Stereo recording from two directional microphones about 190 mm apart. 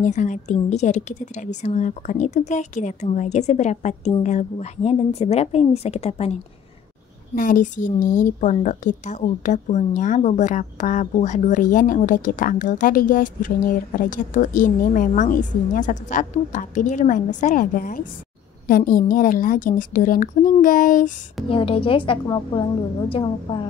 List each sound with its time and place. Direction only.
0.0 s speech: 40° left (ahead or behind)
7.3 s a woman's voice: 45° left (ahead or behind)
21.5 s a woman's voice: 30° left (ahead or behind)